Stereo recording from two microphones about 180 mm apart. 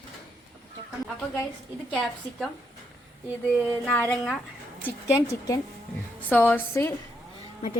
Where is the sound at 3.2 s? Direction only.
10° right (ahead or behind).